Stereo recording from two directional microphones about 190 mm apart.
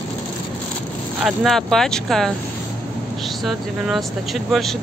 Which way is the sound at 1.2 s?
Centre (ahead or behind).